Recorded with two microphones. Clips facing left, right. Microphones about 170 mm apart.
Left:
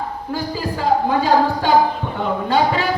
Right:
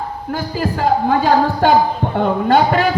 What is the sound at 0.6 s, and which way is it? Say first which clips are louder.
A man's voice: right 3 dB; 55° right (ahead or behind).